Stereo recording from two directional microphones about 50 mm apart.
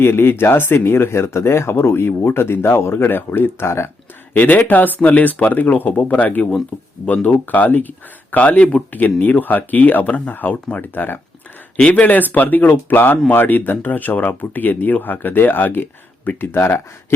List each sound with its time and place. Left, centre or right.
0.0 s speech: left
4.4 s speech: left
7.1 s speech: left
7.4 s speech: left
8.9 s speech: left
11.8 s speech: left